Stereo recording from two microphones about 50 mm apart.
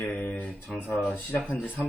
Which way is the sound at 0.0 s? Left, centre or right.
Left.